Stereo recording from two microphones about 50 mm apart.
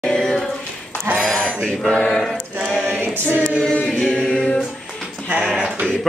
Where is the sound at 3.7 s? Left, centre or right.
Centre.